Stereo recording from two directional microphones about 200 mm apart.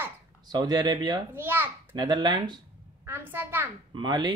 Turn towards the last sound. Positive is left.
turn(degrees=-20)  # may be behind; listen again after turning